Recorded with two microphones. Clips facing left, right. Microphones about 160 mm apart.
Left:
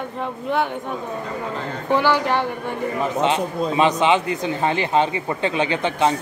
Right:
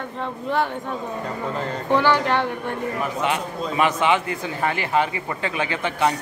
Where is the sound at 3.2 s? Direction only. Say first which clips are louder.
Left 5 dB; 25° left (ahead or behind).